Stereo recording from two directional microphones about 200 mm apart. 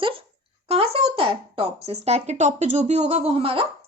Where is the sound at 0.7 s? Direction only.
30° right (ahead or behind).